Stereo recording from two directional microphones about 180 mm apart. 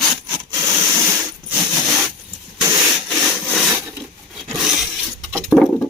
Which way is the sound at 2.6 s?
10° right (ahead or behind).